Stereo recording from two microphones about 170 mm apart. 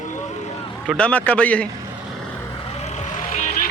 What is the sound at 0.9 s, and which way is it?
Speech, 10° left (ahead or behind).